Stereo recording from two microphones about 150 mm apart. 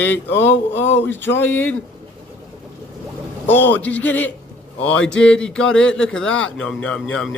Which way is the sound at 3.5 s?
10° left (ahead or behind).